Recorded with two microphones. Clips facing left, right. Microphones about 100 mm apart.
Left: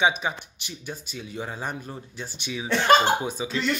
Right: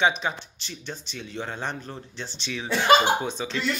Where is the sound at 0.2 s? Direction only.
10° left (ahead or behind).